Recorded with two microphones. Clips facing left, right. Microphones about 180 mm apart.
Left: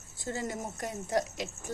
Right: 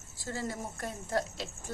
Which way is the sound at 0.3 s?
20° left (ahead or behind).